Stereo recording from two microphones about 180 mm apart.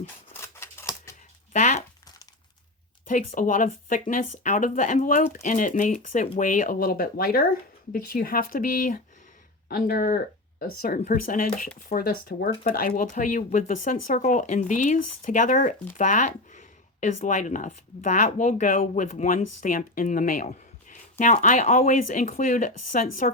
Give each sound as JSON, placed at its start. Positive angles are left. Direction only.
{"t": 0.0, "sound": "scissors", "side_deg": 15}
{"t": 1.5, "sound": "speech", "side_deg": 40}
{"t": 3.1, "sound": "speech", "side_deg": 45}